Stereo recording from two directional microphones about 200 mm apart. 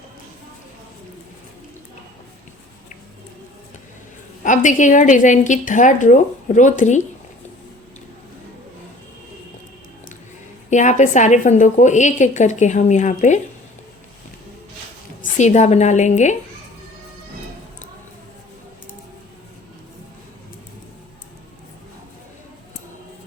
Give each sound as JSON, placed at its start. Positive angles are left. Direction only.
{"t": 4.4, "sound": "a woman's voice", "side_deg": 40}
{"t": 10.7, "sound": "a woman's voice", "side_deg": 35}
{"t": 15.2, "sound": "a woman's voice", "side_deg": 35}